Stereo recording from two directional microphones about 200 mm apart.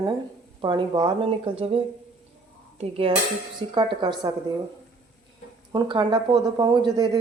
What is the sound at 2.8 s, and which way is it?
Speech, 30° right (ahead or behind).